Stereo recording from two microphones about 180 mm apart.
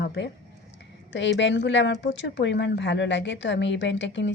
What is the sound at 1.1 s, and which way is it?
A woman's voice, 85° left.